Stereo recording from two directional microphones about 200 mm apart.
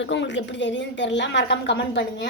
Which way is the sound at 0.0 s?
65° left (ahead or behind).